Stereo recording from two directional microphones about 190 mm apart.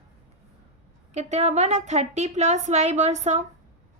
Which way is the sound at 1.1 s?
35° right (ahead or behind).